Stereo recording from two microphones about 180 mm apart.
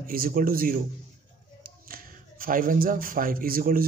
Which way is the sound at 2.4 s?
50° right (ahead or behind).